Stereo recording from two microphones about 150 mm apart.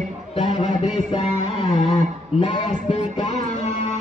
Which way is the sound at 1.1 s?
35° left (ahead or behind).